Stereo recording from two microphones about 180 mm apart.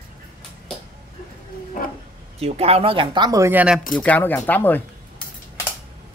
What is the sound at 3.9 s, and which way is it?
Speech, 10° left (ahead or behind).